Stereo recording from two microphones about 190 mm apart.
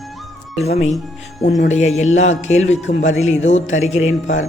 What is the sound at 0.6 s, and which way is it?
A man's voice, 35° left (ahead or behind).